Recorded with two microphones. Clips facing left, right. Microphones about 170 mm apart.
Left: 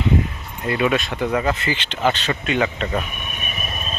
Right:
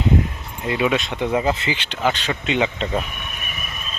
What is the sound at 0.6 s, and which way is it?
Speech, 10° right (ahead or behind).